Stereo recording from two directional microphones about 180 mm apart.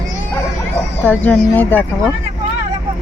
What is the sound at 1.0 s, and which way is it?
Speech, 10° left (ahead or behind).